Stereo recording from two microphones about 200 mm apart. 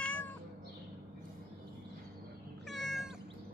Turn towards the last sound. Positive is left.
turn(degrees=0)  # may be behind; listen again after turning